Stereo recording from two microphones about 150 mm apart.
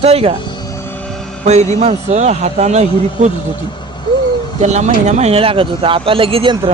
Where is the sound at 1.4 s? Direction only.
50° right (ahead or behind).